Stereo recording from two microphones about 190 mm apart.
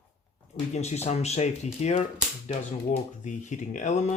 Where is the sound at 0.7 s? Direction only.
35° left (ahead or behind).